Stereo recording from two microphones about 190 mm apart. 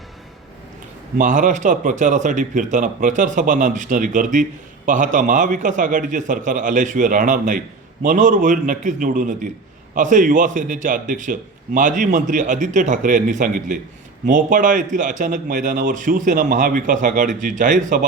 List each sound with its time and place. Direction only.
1.2 s a man's voice: 40° right (ahead or behind)